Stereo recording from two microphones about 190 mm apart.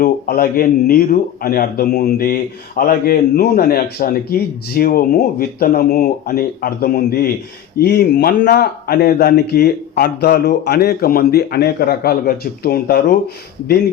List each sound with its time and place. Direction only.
0.0 s speech: 50° left (ahead or behind)